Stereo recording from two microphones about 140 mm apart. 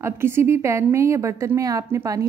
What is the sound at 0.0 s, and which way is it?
A woman's voice, 20° right (ahead or behind).